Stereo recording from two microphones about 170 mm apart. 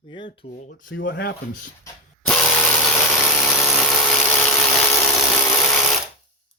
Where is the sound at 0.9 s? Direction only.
90° left; by 1.6 s 70° left (ahead or behind).